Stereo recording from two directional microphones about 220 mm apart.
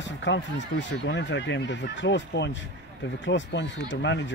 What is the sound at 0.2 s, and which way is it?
Speech, 55° left (ahead or behind).